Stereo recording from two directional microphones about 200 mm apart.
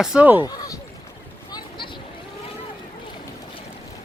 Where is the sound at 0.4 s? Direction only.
20° left (ahead or behind).